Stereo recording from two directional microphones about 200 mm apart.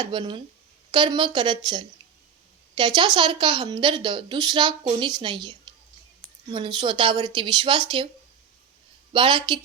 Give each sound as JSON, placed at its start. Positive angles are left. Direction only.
{"t": 0.0, "sound": "a woman's voice", "side_deg": -25}
{"t": 9.1, "sound": "a woman's voice", "side_deg": -25}